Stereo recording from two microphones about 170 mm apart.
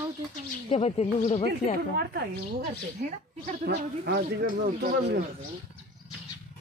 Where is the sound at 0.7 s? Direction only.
40° left (ahead or behind).